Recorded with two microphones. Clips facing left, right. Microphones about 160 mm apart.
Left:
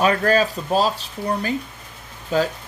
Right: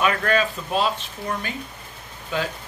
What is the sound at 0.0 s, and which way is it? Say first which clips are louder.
Speech: left 4 dB; 35° left (ahead or behind).